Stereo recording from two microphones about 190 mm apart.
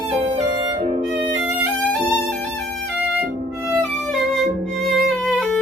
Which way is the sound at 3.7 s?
Centre (ahead or behind).